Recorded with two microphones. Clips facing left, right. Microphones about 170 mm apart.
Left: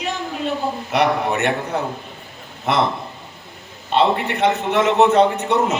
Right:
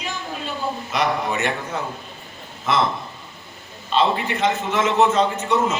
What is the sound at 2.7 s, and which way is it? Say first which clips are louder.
Speech: left 2 dB; 60° left (ahead or behind).